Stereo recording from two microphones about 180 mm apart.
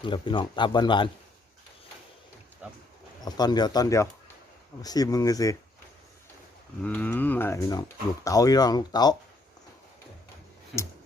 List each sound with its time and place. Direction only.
0.0 s speech: 25° left (ahead or behind)
3.2 s speech: 20° left (ahead or behind)
6.8 s speech: 10° left (ahead or behind)